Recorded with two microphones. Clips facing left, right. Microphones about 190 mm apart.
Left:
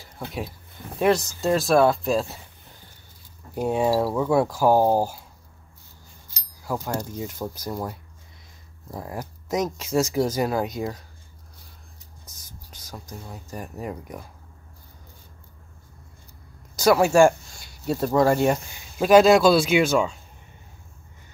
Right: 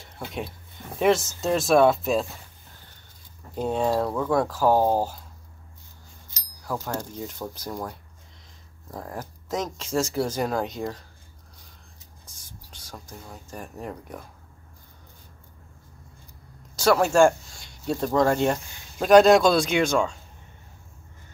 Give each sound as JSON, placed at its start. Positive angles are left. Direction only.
{"t": 0.9, "sound": "speech", "side_deg": 0}
{"t": 3.5, "sound": "speech", "side_deg": 10}
{"t": 6.6, "sound": "speech", "side_deg": 10}
{"t": 12.3, "sound": "a sound", "side_deg": 40}
{"t": 13.3, "sound": "speech", "side_deg": 5}
{"t": 16.7, "sound": "speech", "side_deg": 10}